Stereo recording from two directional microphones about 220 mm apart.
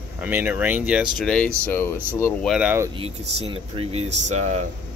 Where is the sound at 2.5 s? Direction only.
5° right (ahead or behind).